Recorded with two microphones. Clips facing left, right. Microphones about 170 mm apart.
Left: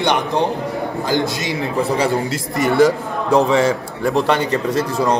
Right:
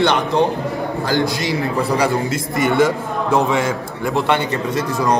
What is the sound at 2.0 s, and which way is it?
A man's voice, 35° left (ahead or behind).